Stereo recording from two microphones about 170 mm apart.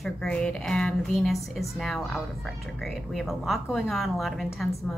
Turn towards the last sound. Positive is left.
turn(degrees=0)  # may be behind; listen again after turning